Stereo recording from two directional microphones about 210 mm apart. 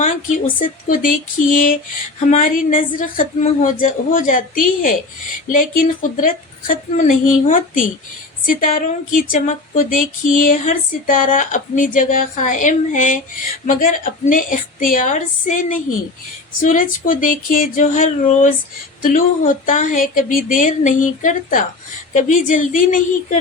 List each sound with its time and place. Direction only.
0.0 s speech: 35° left (ahead or behind)